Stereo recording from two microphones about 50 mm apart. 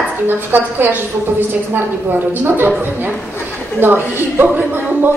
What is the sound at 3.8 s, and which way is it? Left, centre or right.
A woman's voice, right.